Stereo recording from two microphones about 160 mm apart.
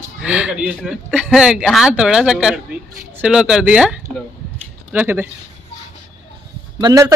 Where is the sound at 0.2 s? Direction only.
10° right (ahead or behind).